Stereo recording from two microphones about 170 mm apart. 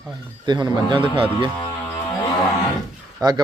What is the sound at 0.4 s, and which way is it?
A man's voice, 25° right (ahead or behind).